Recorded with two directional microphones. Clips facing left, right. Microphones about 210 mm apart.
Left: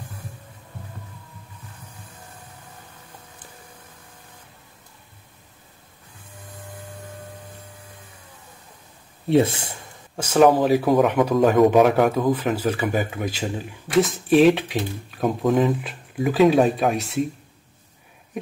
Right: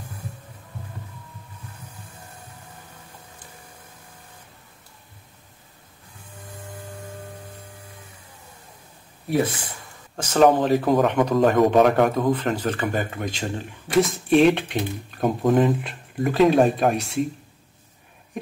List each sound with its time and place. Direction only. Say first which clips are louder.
9.3 s speech: left 4 dB; 25° left (ahead or behind)
10.1 s speech: left 1 dB; 10° left (ahead or behind)